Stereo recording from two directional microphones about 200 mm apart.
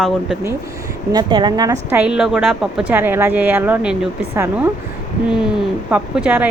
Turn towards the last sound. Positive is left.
turn(degrees=-5)  # may be behind; listen again after turning